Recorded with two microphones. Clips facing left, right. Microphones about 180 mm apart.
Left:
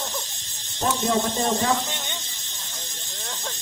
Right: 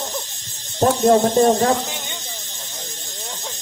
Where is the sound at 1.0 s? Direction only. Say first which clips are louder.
Right 11 dB; 50° right (ahead or behind).